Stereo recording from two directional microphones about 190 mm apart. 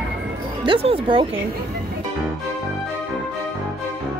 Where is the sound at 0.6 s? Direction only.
30° right (ahead or behind).